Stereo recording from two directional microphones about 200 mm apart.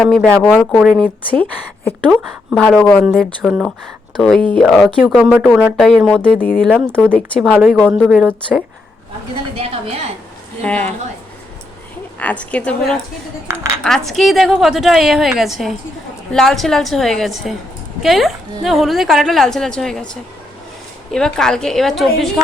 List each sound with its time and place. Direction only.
0.0 s a woman's voice: centre (ahead or behind)
7.4 s a woman's voice: 5° right (ahead or behind)
9.6 s a woman's voice: 30° right (ahead or behind)
10.6 s speech: 5° left (ahead or behind)
12.2 s speech: 5° left (ahead or behind)
13.5 s a woman's voice: 15° right (ahead or behind)
13.8 s a woman's voice: centre (ahead or behind)
21.1 s a woman's voice: 5° left (ahead or behind)